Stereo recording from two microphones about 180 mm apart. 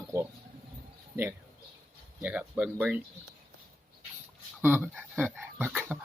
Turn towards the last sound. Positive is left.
turn(degrees=-10)  # may be behind; listen again after turning